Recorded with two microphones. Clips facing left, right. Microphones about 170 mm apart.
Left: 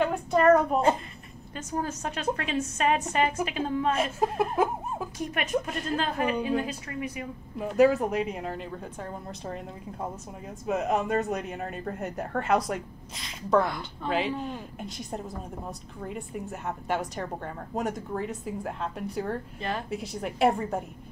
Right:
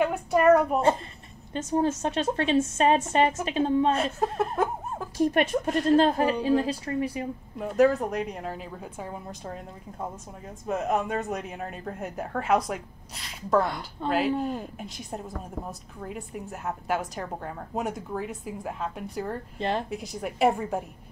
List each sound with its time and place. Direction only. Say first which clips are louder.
0.0 s a woman's voice: right 1 dB; 10° right (ahead or behind)
1.5 s a woman's voice: right 7 dB; 25° right (ahead or behind)
4.0 s speech: even; 5° left (ahead or behind)
5.2 s a woman's voice: right 7 dB; 35° right (ahead or behind)
7.5 s a woman's voice: even; 5° left (ahead or behind)